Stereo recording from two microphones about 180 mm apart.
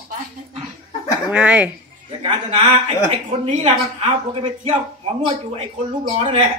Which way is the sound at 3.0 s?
35° right (ahead or behind).